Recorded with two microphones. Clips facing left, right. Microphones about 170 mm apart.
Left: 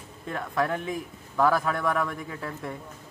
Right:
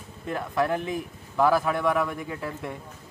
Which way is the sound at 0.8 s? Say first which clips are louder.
Right 1 dB; 5° right (ahead or behind).